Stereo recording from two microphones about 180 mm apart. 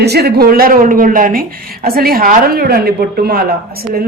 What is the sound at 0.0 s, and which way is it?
A woman's voice, 65° right (ahead or behind).